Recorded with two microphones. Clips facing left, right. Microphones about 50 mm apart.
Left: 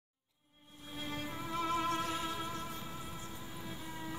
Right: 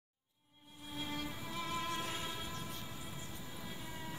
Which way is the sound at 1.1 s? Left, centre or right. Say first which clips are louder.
Left 6 dB; left.